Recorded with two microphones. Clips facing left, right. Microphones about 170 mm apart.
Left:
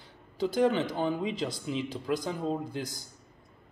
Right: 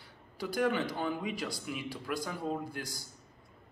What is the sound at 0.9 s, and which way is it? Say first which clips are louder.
Speech: left 5 dB; 20° left (ahead or behind).